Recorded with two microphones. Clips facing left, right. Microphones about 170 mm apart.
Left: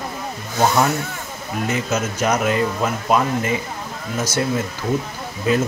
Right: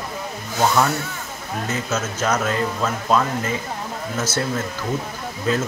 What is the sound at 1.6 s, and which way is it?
Speech, 15° left (ahead or behind).